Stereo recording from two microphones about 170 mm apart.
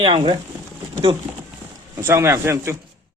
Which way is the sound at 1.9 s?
15° right (ahead or behind).